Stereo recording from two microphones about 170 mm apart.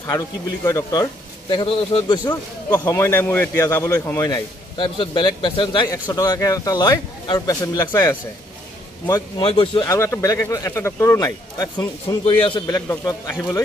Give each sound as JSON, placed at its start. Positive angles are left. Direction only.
{"t": 0.7, "sound": "a man's voice", "side_deg": 20}
{"t": 1.5, "sound": "a man's voice", "side_deg": 30}
{"t": 9.0, "sound": "a man's voice", "side_deg": 25}
{"t": 9.9, "sound": "speech", "side_deg": 15}
{"t": 12.4, "sound": "a man's voice", "side_deg": 30}